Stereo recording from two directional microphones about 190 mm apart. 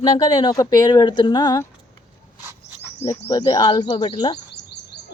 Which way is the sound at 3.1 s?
20° left (ahead or behind).